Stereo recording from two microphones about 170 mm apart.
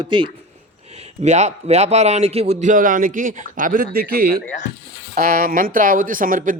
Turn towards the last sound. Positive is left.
turn(degrees=-50)  # may be behind; listen again after turning